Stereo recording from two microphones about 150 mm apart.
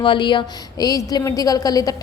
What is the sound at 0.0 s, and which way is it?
A woman's voice, 35° left (ahead or behind).